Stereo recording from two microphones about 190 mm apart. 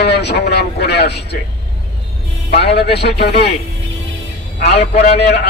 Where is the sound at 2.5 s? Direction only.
60° left (ahead or behind).